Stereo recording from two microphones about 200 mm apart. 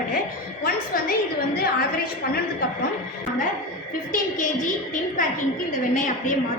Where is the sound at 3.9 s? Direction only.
40° left (ahead or behind).